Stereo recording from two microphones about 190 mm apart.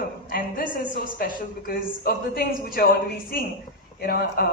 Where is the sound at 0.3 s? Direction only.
50° left (ahead or behind).